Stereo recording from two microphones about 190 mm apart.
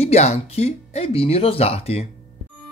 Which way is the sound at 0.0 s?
35° left (ahead or behind).